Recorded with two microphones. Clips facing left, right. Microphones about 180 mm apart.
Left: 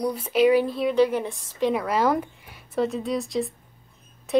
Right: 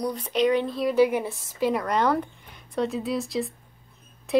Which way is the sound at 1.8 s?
5° left (ahead or behind).